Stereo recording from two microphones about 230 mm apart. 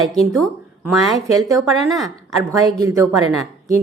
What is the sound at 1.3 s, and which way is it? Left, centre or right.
A woman's voice, centre.